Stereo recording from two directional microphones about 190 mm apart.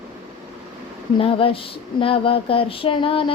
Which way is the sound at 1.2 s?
30° left (ahead or behind).